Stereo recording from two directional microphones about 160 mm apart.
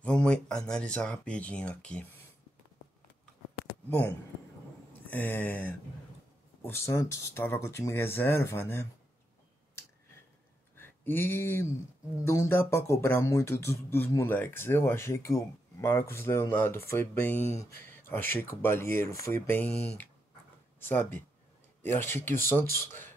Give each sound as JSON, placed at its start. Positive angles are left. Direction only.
{"t": 0.0, "sound": "speech", "side_deg": 5}
{"t": 5.0, "sound": "speech", "side_deg": 10}
{"t": 10.8, "sound": "a sound", "side_deg": 15}
{"t": 12.3, "sound": "speech", "side_deg": 15}
{"t": 20.8, "sound": "speech", "side_deg": 15}